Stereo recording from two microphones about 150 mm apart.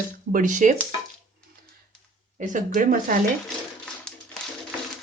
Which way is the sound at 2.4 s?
60° right (ahead or behind).